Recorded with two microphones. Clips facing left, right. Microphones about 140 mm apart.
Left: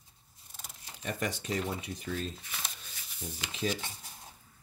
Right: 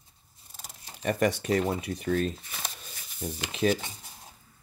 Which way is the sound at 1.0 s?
65° right (ahead or behind).